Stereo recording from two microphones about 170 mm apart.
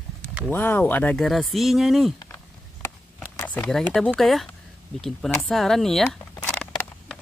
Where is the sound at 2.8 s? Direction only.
10° left (ahead or behind).